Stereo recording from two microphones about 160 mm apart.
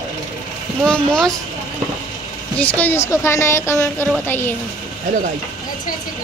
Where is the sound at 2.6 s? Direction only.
10° left (ahead or behind).